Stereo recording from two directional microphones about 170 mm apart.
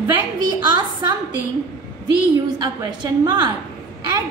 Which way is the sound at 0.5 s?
25° right (ahead or behind).